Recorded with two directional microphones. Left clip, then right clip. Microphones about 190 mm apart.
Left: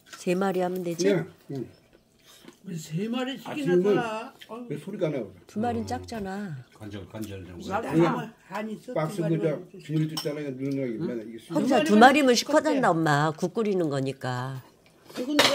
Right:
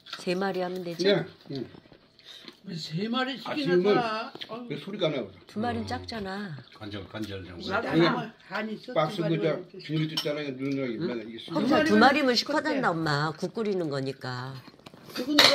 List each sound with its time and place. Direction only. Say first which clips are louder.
0.2 s speech: left 3 dB; 55° left (ahead or behind)
2.7 s speech: right 1 dB; 30° left (ahead or behind)
5.5 s speech: left 3 dB; 50° left (ahead or behind)
7.2 s speech: right 2 dB; 40° left (ahead or behind)
7.9 s speech: left 1 dB; 25° left (ahead or behind)
11.0 s speech: even; 60° left (ahead or behind)